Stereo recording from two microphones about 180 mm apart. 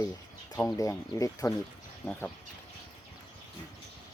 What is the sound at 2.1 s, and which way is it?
Speech, 5° left (ahead or behind).